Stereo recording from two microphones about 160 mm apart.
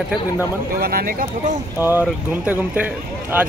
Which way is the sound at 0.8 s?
65° right (ahead or behind).